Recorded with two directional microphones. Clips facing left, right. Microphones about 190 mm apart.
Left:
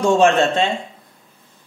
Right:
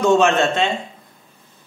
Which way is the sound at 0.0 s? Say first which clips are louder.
Left 1 dB; 35° left (ahead or behind).